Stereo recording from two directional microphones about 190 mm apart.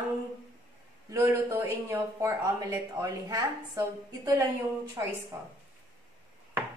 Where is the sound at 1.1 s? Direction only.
15° right (ahead or behind).